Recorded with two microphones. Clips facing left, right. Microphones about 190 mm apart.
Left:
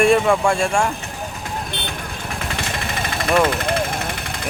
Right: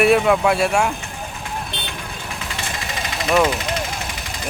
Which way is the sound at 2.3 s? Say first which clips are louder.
Left 4 dB; 55° left (ahead or behind).